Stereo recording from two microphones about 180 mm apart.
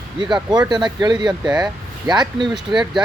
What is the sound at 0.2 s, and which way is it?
Speech, 25° right (ahead or behind).